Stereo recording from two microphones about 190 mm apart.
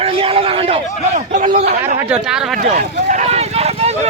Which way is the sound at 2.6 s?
45° right (ahead or behind).